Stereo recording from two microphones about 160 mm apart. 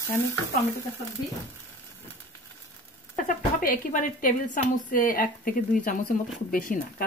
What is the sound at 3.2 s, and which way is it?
Speech, 60° left (ahead or behind).